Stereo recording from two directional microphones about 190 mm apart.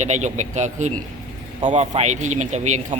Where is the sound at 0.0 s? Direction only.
40° right (ahead or behind).